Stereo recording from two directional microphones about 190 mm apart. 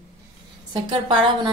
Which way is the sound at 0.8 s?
25° right (ahead or behind).